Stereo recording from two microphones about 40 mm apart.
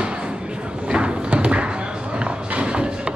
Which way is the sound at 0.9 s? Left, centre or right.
Right.